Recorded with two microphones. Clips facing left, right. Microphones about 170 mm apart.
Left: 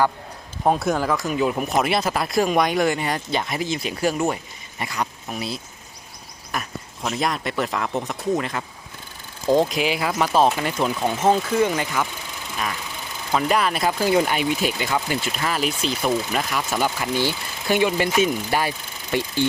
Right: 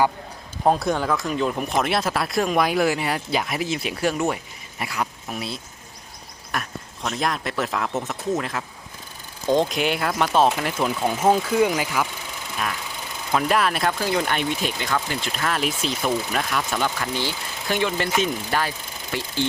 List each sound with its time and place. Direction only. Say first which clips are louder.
0.6 s speech: even; centre (ahead or behind)
13.3 s speech: even; centre (ahead or behind)
14.0 s speech: left 4 dB; 10° left (ahead or behind)